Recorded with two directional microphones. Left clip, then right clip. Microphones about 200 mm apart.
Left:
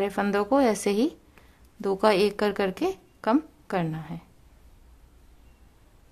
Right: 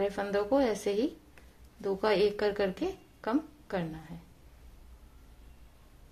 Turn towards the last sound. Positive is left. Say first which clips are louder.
# left 7 dB
turn(degrees=25)  # may be behind; listen again after turning